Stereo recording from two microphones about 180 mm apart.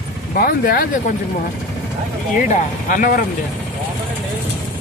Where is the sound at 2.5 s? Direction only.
50° left (ahead or behind).